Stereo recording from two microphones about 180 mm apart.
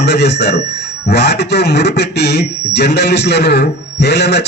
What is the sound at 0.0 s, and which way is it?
A man's voice, 65° left (ahead or behind).